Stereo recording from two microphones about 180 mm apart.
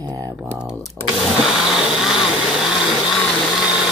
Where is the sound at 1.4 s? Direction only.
5° right (ahead or behind).